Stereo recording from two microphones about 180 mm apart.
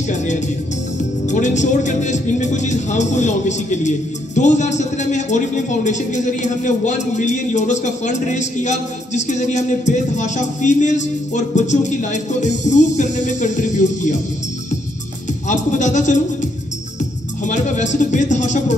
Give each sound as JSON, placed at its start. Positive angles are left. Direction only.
{"t": 1.3, "sound": "a man's voice", "side_deg": 40}
{"t": 15.4, "sound": "a man's voice", "side_deg": 45}
{"t": 17.5, "sound": "a man's voice", "side_deg": 40}